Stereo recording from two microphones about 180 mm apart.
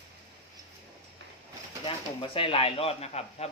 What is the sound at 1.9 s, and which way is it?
Speech, 30° left (ahead or behind).